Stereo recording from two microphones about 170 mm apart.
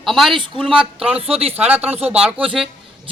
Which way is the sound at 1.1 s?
35° right (ahead or behind).